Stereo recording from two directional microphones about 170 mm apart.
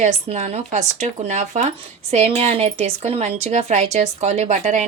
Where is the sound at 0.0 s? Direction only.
40° right (ahead or behind).